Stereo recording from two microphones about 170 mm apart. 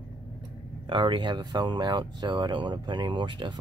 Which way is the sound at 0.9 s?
30° right (ahead or behind).